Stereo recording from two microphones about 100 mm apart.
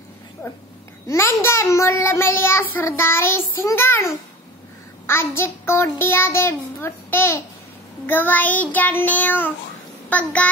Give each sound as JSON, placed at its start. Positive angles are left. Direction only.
{"t": 0.4, "sound": "child singing", "side_deg": 25}
{"t": 10.0, "sound": "a child's voice", "side_deg": 15}